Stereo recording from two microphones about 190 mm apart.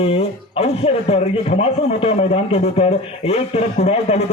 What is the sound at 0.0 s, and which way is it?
Speech, 30° left (ahead or behind).